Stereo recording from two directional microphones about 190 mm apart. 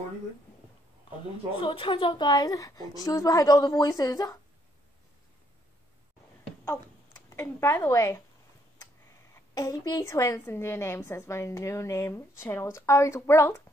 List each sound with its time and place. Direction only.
1.6 s a woman's voice: 25° left (ahead or behind)
6.6 s speech: 20° left (ahead or behind)
9.3 s a woman's voice: 15° left (ahead or behind)